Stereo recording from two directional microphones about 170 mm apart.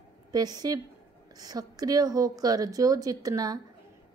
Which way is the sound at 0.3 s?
25° right (ahead or behind).